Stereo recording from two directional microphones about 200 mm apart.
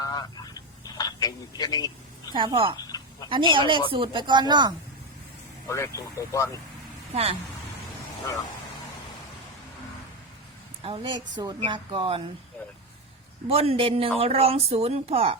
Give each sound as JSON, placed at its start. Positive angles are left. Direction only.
{"t": 0.0, "sound": "telephone", "side_deg": 20}
{"t": 2.3, "sound": "speech", "side_deg": -25}
{"t": 2.8, "sound": "a sound", "side_deg": 20}
{"t": 3.2, "sound": "speech", "side_deg": -25}
{"t": 5.6, "sound": "speech", "side_deg": 15}
{"t": 7.1, "sound": "speech", "side_deg": -30}
{"t": 10.8, "sound": "speech", "side_deg": -25}
{"t": 13.5, "sound": "speech", "side_deg": -30}